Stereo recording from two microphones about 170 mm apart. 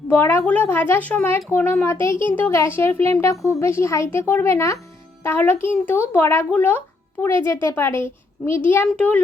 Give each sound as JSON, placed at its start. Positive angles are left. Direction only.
{"t": 0.1, "sound": "a child's voice", "side_deg": 15}